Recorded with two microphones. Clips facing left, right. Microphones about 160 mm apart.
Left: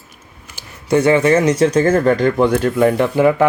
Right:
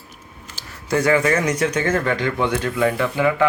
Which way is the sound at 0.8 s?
25° left (ahead or behind).